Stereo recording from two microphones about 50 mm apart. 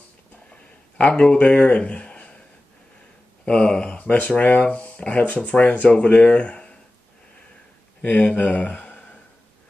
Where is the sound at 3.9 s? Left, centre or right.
Left.